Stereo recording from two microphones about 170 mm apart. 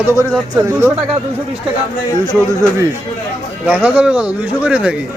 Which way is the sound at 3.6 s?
5° right (ahead or behind).